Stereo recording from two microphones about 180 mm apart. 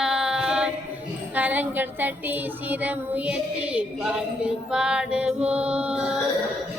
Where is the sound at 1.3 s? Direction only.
10° right (ahead or behind).